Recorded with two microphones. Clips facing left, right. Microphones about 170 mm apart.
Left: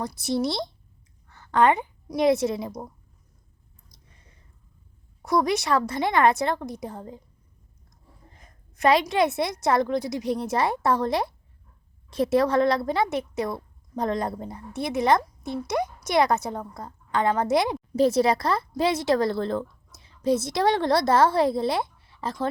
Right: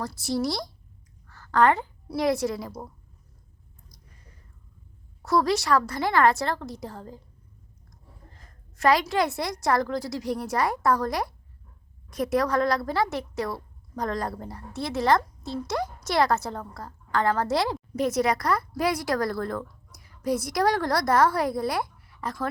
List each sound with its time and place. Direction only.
0.0 s a woman's voice: 20° left (ahead or behind)
3.9 s a sound: 25° left (ahead or behind)
5.2 s a woman's voice: 20° left (ahead or behind)
17.9 s speech: 30° left (ahead or behind)